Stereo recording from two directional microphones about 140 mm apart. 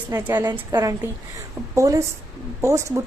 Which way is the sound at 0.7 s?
25° right (ahead or behind).